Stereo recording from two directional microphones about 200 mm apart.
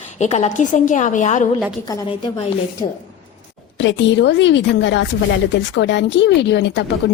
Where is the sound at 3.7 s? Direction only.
60° left (ahead or behind).